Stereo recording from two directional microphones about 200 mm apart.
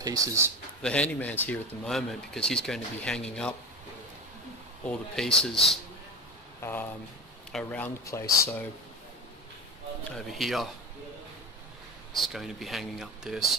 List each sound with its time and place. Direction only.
0.0 s speech: 15° right (ahead or behind)
0.8 s speech: 5° left (ahead or behind)
4.8 s speech: centre (ahead or behind)
6.6 s speech: 10° left (ahead or behind)
10.1 s speech: centre (ahead or behind)
12.2 s speech: centre (ahead or behind)